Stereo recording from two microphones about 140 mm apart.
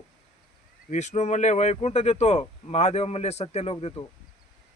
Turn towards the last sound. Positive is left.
turn(degrees=50)  # may be behind; listen again after turning